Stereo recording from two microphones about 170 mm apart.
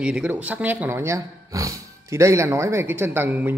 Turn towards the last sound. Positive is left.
turn(degrees=-10)  # may be behind; listen again after turning